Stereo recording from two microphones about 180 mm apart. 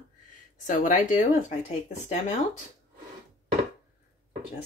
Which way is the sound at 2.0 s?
35° left (ahead or behind).